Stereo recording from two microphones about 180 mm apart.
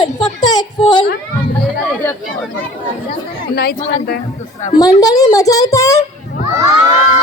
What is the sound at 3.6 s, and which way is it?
Speech, 60° left (ahead or behind).